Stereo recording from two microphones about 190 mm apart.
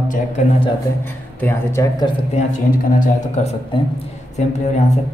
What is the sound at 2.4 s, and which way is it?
Speech, 35° left (ahead or behind).